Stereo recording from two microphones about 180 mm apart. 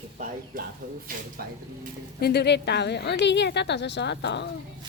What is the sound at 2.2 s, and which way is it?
A woman's voice, 65° left (ahead or behind).